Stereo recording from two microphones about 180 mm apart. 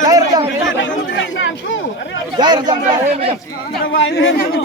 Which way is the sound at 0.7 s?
90° left.